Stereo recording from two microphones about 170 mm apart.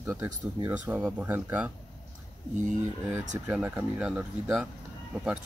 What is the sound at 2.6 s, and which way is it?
Speech, 45° right (ahead or behind).